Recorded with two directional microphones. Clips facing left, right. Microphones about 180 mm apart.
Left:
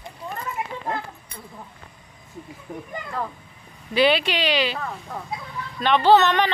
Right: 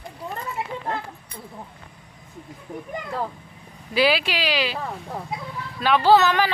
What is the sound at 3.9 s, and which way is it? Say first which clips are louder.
Speech: left 2 dB; 5° right (ahead or behind).